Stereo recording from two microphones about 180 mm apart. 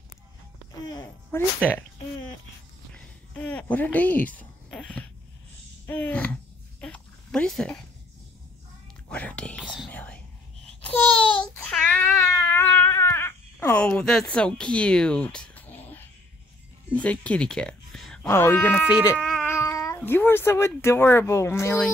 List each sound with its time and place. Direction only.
0.8 s speech: 20° left (ahead or behind)
1.6 s speech: 10° left (ahead or behind)
3.3 s speech: 5° left (ahead or behind)
5.9 s a sound: 10° left (ahead or behind)
9.1 s speech: 5° left (ahead or behind)
10.7 s a sound: 10° left (ahead or behind)
16.9 s speech: 5° left (ahead or behind)
19.1 s a sound: 5° left (ahead or behind)
19.5 s speech: 15° left (ahead or behind)